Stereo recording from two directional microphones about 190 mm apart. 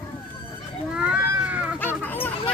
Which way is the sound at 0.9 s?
5° right (ahead or behind).